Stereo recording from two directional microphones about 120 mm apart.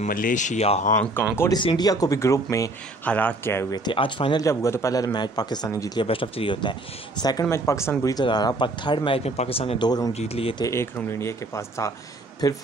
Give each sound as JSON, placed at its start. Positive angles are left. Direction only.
{"t": 0.0, "sound": "speech", "side_deg": 90}
{"t": 1.2, "sound": "speech", "side_deg": 15}
{"t": 1.8, "sound": "a man's voice", "side_deg": 30}
{"t": 3.1, "sound": "speech", "side_deg": 15}
{"t": 3.7, "sound": "speech", "side_deg": 40}
{"t": 4.4, "sound": "a man's voice", "side_deg": 25}
{"t": 5.9, "sound": "speech", "side_deg": 50}
{"t": 7.4, "sound": "a man's voice", "side_deg": 25}
{"t": 8.0, "sound": "speech", "side_deg": 35}
{"t": 9.8, "sound": "speech", "side_deg": 30}
{"t": 10.1, "sound": "speech", "side_deg": 60}
{"t": 10.6, "sound": "a man's voice", "side_deg": 25}